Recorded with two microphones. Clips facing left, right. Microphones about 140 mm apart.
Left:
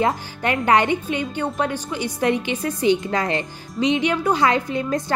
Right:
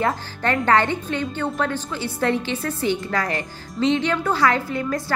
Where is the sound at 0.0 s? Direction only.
15° left (ahead or behind).